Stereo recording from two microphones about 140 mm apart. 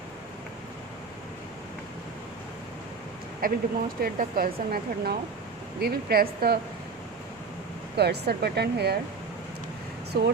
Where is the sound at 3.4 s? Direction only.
90° right.